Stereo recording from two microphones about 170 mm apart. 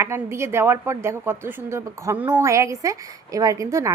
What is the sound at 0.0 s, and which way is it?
A woman's voice, 15° right (ahead or behind).